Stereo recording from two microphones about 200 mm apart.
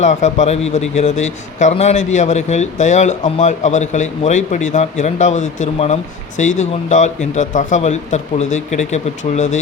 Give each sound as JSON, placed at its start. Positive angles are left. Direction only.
{"t": 0.0, "sound": "a man's voice", "side_deg": 35}